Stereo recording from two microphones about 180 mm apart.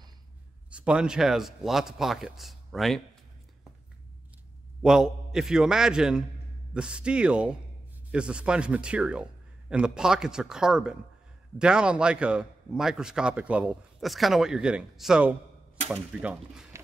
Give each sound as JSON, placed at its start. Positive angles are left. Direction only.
{"t": 0.7, "sound": "a man's voice", "side_deg": -5}
{"t": 4.8, "sound": "a man's voice", "side_deg": -5}